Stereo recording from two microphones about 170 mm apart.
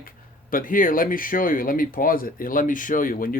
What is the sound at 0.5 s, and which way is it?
Speech, 55° left (ahead or behind).